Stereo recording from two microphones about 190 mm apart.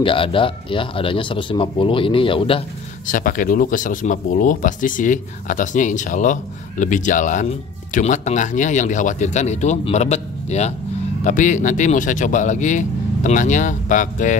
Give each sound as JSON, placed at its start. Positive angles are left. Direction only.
{"t": 0.0, "sound": "speech", "side_deg": 30}
{"t": 3.1, "sound": "speech", "side_deg": 45}